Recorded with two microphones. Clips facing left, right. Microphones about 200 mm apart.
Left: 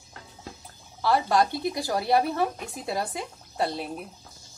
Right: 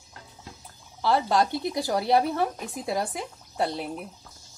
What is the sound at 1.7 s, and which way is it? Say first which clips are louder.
A woman's voice: right 1 dB; 20° right (ahead or behind).